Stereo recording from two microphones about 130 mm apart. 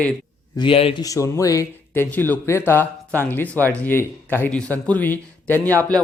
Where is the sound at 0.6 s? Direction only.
45° left (ahead or behind).